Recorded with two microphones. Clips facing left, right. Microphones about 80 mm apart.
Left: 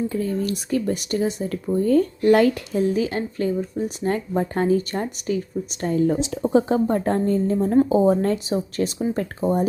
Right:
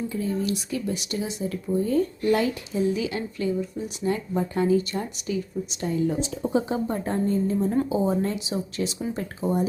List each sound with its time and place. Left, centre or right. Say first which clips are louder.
0.1 s speech: left 3 dB; left
2.9 s speech: left 5 dB; left
9.0 s speech: left 5 dB; left